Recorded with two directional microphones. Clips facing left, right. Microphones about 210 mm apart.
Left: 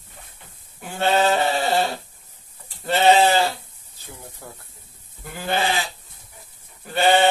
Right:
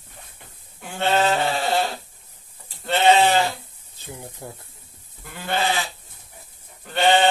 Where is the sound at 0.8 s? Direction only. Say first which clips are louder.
Left 1 dB; centre (ahead or behind).